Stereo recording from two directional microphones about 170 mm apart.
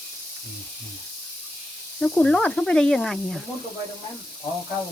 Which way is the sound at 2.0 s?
5° left (ahead or behind).